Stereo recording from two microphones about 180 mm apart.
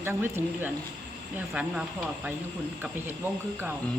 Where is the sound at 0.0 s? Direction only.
15° right (ahead or behind).